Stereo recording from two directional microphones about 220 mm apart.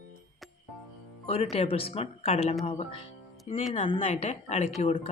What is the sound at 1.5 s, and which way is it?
Speech, 25° left (ahead or behind).